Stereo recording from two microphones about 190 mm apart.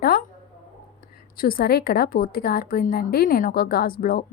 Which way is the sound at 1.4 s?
50° left (ahead or behind).